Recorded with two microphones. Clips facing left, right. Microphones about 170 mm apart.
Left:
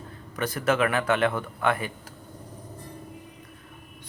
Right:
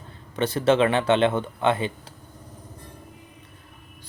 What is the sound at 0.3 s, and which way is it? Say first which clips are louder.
Speech: right 5 dB; 30° right (ahead or behind).